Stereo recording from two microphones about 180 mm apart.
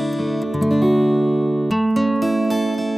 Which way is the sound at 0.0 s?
Centre (ahead or behind).